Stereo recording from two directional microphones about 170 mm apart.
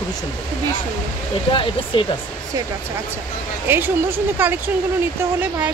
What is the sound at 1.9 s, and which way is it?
Speech, 30° left (ahead or behind).